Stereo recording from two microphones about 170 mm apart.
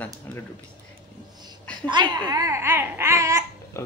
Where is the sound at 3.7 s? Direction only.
15° left (ahead or behind).